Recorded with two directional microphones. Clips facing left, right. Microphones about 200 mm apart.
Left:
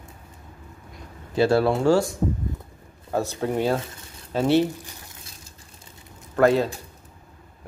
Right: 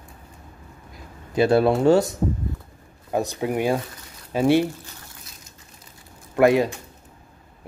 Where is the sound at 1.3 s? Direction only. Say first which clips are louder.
Right 2 dB; 20° right (ahead or behind).